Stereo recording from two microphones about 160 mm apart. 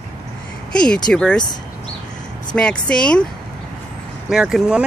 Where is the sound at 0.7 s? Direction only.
5° left (ahead or behind).